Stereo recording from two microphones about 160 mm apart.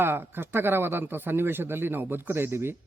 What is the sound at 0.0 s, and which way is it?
A man's voice, 15° right (ahead or behind).